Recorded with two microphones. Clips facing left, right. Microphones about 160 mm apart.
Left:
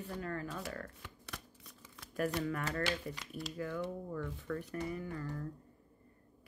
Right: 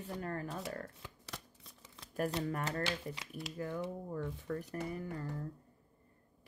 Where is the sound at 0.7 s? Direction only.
30° right (ahead or behind).